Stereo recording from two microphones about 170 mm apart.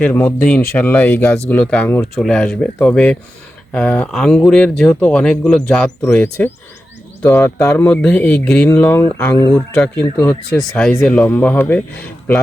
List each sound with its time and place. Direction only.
0.0 s speech: 10° left (ahead or behind)